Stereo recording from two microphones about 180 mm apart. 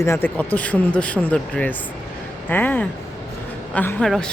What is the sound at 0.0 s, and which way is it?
A woman's voice, 15° left (ahead or behind).